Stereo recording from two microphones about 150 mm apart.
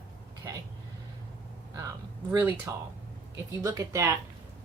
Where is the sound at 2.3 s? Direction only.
15° right (ahead or behind).